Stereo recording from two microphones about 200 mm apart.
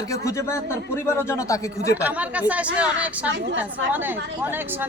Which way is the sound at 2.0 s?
5° right (ahead or behind).